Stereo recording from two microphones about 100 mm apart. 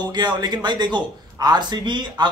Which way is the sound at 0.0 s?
45° right (ahead or behind).